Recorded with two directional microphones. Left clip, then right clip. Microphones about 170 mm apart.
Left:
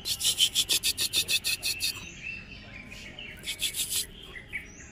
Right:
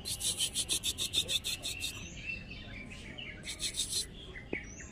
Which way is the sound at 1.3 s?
55° left (ahead or behind).